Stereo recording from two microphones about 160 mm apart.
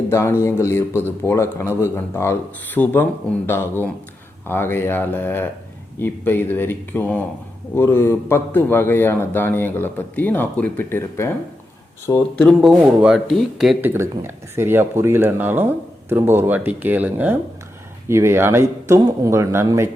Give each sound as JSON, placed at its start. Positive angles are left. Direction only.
{"t": 0.1, "sound": "speech", "side_deg": 15}
{"t": 12.5, "sound": "speech", "side_deg": -5}
{"t": 13.8, "sound": "speech", "side_deg": -15}